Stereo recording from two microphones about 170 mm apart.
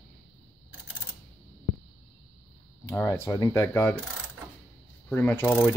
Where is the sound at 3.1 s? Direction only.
20° left (ahead or behind).